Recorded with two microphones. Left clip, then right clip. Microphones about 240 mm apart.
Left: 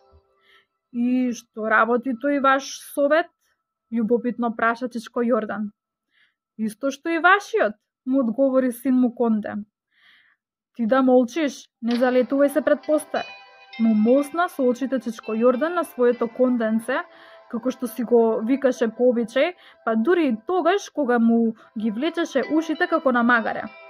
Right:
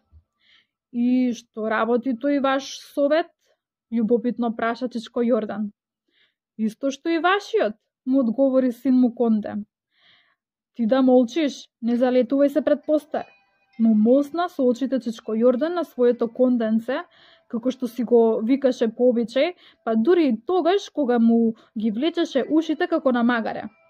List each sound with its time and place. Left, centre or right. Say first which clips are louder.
0.5 s speech: right 1 dB; centre
10.8 s speech: even; centre
13.3 s music: left 15 dB; left
14.1 s speech: even; centre